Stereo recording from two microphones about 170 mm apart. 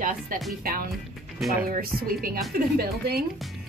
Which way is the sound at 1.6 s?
60° right (ahead or behind).